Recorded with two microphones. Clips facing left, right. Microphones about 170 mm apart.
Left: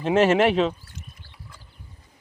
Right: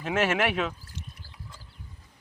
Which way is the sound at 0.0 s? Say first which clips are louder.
Left 8 dB; 30° left (ahead or behind).